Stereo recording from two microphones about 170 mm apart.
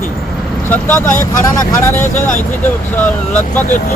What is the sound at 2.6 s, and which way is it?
Speech, 10° left (ahead or behind).